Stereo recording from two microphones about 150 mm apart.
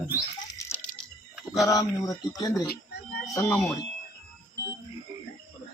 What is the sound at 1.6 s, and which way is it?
Speech, 20° left (ahead or behind).